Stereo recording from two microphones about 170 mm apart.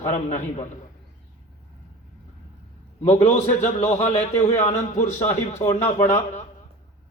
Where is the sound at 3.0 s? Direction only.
40° left (ahead or behind).